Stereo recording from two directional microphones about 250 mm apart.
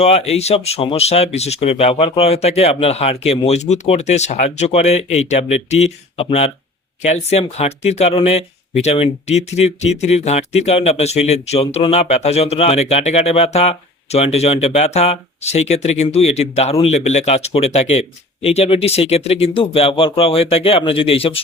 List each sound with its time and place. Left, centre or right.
0.0 s speech: left